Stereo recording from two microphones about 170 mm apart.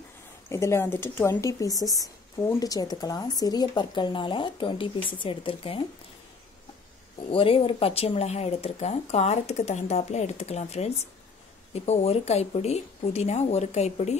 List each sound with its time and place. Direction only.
0.5 s speech: 15° left (ahead or behind); by 5.8 s 30° left (ahead or behind)
7.2 s speech: 30° left (ahead or behind)